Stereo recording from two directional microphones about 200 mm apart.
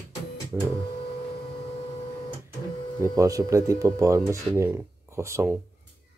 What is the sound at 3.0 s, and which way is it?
Speech, 15° right (ahead or behind).